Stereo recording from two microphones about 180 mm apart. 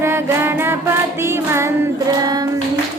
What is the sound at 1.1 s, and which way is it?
Child singing, 15° right (ahead or behind).